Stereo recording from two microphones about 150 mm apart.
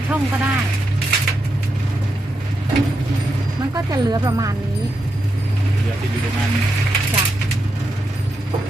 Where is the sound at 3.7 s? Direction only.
25° right (ahead or behind).